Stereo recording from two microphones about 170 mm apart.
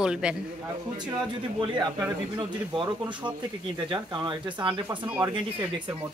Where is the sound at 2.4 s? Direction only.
30° right (ahead or behind).